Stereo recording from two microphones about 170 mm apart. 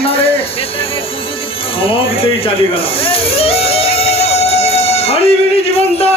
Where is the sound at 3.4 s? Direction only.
35° left (ahead or behind).